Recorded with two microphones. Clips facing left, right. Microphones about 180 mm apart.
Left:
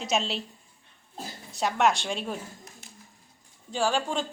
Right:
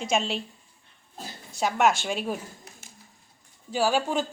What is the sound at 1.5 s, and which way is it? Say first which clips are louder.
Speech: right 1 dB; centre (ahead or behind).